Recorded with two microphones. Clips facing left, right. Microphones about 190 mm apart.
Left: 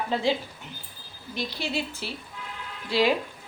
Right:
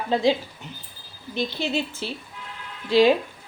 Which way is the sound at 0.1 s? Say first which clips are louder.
Right 6 dB; 15° right (ahead or behind).